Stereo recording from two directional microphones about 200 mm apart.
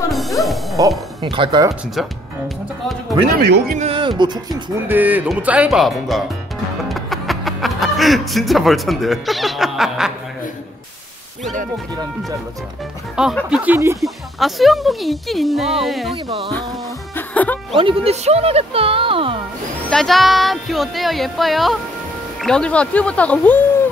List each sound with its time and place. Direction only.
0.1 s music: centre (ahead or behind)
0.7 s speech: 20° right (ahead or behind)
3.7 s speech: 30° right (ahead or behind)
4.7 s speech: 10° right (ahead or behind)
13.1 s speech: 5° right (ahead or behind)
14.0 s speech: centre (ahead or behind)
17.1 s music: 10° left (ahead or behind)
17.7 s speech: 25° right (ahead or behind)
19.9 s speech: centre (ahead or behind)